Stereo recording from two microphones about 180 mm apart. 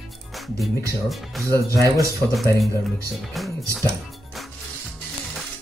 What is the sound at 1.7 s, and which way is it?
Speech, 20° right (ahead or behind).